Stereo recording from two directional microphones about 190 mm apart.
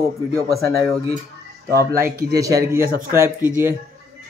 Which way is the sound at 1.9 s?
50° right (ahead or behind).